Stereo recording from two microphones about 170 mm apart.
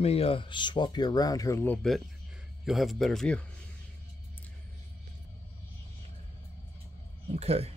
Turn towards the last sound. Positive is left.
turn(degrees=-40)  # may be behind; listen again after turning